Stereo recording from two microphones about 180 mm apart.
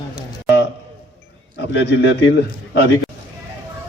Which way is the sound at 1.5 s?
70° left (ahead or behind).